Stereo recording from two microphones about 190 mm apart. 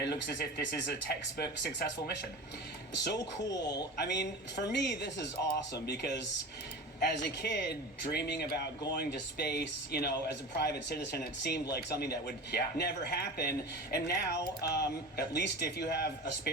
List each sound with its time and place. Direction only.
0.0 s speech: 60° left (ahead or behind)
3.5 s speech: 20° left (ahead or behind)
3.9 s speech: 60° left (ahead or behind)